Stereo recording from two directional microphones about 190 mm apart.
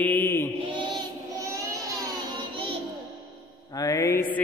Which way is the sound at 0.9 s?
15° right (ahead or behind).